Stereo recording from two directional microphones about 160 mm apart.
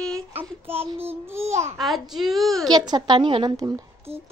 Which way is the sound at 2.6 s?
25° right (ahead or behind).